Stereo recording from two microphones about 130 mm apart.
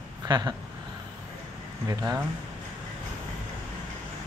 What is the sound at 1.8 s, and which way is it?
Speech, 30° right (ahead or behind).